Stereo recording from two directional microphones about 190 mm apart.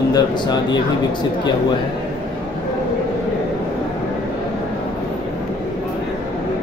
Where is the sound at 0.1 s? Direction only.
20° left (ahead or behind).